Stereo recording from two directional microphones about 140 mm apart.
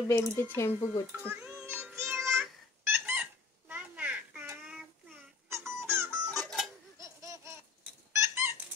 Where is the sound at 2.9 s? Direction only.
15° right (ahead or behind).